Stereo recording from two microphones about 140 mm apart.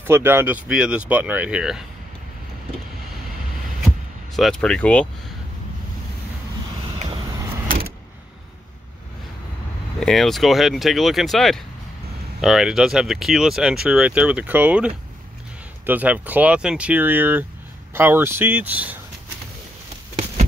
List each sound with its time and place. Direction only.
0.0 s speech: 15° right (ahead or behind)
4.4 s speech: 5° left (ahead or behind)
7.6 s vehicle: 90° right
9.9 s speech: 5° left (ahead or behind)